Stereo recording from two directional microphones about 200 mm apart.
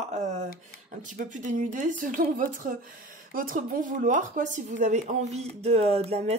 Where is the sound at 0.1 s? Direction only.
35° right (ahead or behind).